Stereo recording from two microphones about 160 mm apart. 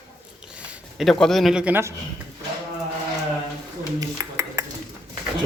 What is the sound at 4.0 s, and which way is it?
Dishes, 20° right (ahead or behind).